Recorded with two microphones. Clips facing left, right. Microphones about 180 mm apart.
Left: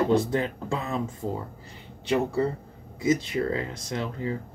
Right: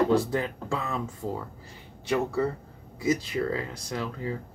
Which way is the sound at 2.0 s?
20° left (ahead or behind).